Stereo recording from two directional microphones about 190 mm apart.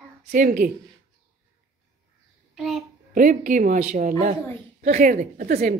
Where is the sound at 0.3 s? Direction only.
45° right (ahead or behind).